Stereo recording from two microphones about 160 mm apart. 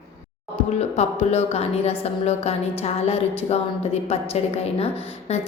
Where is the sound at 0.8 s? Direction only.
40° left (ahead or behind).